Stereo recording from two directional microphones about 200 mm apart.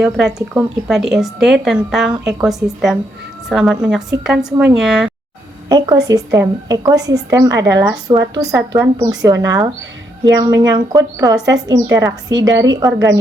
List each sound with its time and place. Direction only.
0.0 s speech: centre (ahead or behind)
5.6 s a woman's voice: 20° right (ahead or behind)